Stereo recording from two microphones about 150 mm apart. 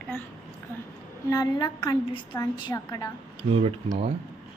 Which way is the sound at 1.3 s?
25° left (ahead or behind).